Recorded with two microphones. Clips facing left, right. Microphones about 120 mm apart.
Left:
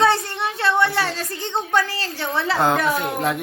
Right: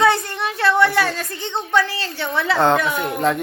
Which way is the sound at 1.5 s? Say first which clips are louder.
Right 1 dB; 40° left (ahead or behind).